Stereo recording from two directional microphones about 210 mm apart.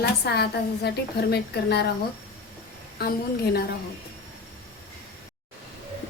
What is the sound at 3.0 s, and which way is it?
Speech, 50° left (ahead or behind).